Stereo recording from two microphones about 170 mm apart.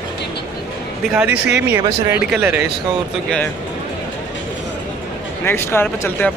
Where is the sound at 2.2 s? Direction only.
5° right (ahead or behind).